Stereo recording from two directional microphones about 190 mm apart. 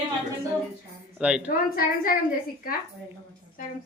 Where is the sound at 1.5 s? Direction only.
50° left (ahead or behind).